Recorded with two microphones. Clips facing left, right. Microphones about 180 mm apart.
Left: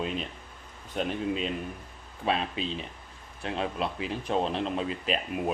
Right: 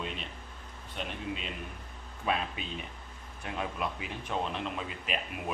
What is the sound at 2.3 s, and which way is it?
Speech, 25° left (ahead or behind).